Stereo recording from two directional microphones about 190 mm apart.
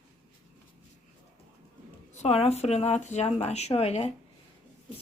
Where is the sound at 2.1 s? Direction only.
35° left (ahead or behind).